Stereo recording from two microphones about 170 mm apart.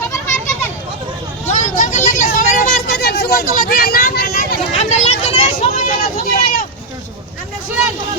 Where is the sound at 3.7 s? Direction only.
55° left (ahead or behind).